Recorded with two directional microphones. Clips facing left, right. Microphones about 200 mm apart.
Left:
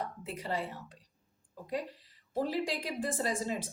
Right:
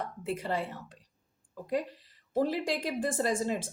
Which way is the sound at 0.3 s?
50° right (ahead or behind).